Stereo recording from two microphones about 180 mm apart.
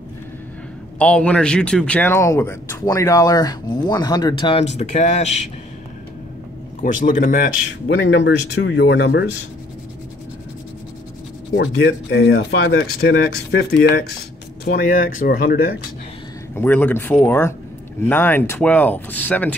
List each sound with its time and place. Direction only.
0.9 s speech: 5° left (ahead or behind); by 5.4 s 40° left (ahead or behind)
6.8 s a man's voice: 45° left (ahead or behind)
7.9 s speech: 75° left (ahead or behind)
11.5 s speech: 80° left
14.7 s a man's voice: 50° left (ahead or behind)
16.5 s speech: 10° left (ahead or behind)